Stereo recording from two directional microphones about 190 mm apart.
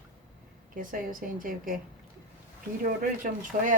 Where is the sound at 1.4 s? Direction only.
45° right (ahead or behind).